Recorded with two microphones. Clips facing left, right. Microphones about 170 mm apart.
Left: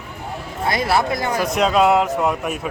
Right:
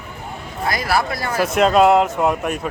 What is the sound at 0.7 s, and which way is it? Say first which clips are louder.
Speech: left 1 dB; 25° left (ahead or behind).